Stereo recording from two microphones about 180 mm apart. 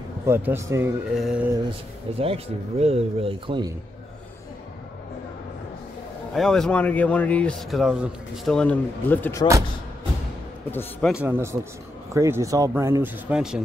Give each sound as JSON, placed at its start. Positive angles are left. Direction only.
{"t": 0.3, "sound": "speech", "side_deg": -15}
{"t": 1.1, "sound": "a sound", "side_deg": -5}
{"t": 2.1, "sound": "a man's voice", "side_deg": -35}
{"t": 6.3, "sound": "speech", "side_deg": 5}
{"t": 10.7, "sound": "speech", "side_deg": 10}
{"t": 11.2, "sound": "speech", "side_deg": -15}
{"t": 13.3, "sound": "a sound", "side_deg": -5}